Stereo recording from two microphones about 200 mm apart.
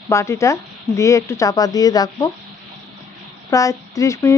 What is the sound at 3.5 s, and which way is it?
Speech, 15° left (ahead or behind).